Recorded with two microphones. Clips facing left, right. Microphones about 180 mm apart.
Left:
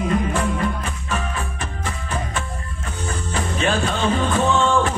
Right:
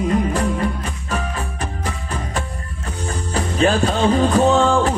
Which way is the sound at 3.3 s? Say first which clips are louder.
Right 5 dB; 40° right (ahead or behind).